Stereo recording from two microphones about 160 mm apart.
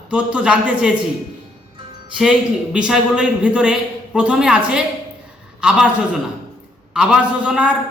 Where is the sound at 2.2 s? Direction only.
5° right (ahead or behind).